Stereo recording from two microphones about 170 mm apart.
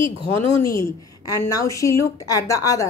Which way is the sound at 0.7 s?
20° left (ahead or behind).